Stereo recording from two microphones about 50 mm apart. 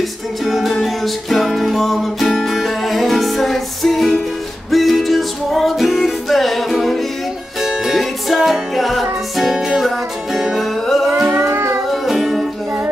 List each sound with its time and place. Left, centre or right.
0.5 s music: centre
11.4 s music: right
11.9 s music: centre